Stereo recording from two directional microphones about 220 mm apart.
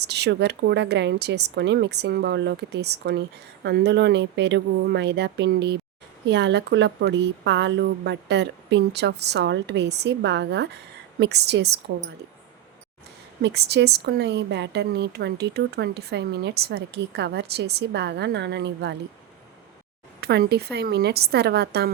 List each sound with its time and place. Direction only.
0.0 s speech: 50° right (ahead or behind)
13.4 s speech: 50° right (ahead or behind)
20.2 s speech: 45° right (ahead or behind)